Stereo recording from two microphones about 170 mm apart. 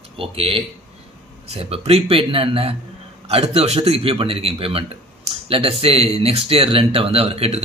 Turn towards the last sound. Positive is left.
turn(degrees=-35)  # may be behind; listen again after turning